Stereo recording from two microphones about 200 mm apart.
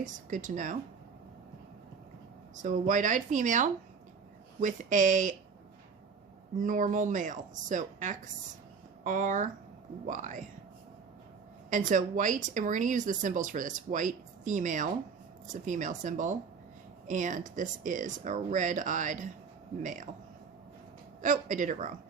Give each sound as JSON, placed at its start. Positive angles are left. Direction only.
{"t": 0.0, "sound": "speech", "side_deg": -40}
{"t": 2.6, "sound": "speech", "side_deg": -40}
{"t": 6.6, "sound": "speech", "side_deg": -40}
{"t": 11.7, "sound": "speech", "side_deg": -40}
{"t": 21.2, "sound": "speech", "side_deg": -40}